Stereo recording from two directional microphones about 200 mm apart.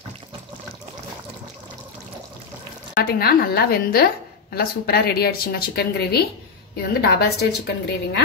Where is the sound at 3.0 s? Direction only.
50° left (ahead or behind).